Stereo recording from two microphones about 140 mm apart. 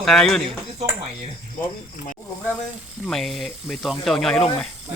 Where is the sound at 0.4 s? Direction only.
50° right (ahead or behind).